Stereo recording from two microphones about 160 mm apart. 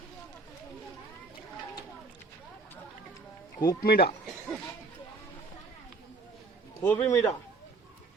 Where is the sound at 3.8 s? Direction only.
75° left (ahead or behind).